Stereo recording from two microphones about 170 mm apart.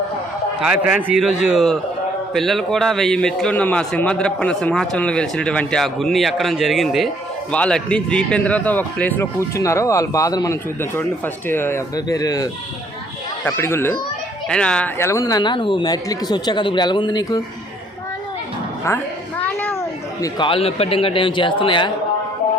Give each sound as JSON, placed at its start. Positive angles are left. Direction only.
{"t": 0.6, "sound": "a man's voice", "side_deg": -5}
{"t": 15.0, "sound": "speech", "side_deg": 20}
{"t": 18.9, "sound": "a man's voice", "side_deg": 15}
{"t": 19.4, "sound": "a sound", "side_deg": 10}
{"t": 20.2, "sound": "a man's voice", "side_deg": 30}